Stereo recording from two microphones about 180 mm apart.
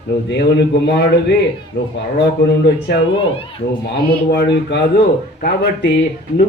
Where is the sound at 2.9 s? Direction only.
75° left (ahead or behind).